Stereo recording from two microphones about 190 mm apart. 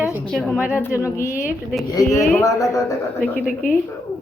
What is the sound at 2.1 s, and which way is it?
Speech, 10° left (ahead or behind).